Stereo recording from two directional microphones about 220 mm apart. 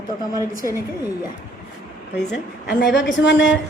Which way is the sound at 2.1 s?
50° left (ahead or behind).